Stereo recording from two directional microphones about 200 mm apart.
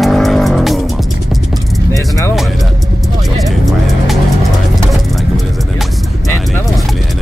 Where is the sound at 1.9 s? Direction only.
15° left (ahead or behind).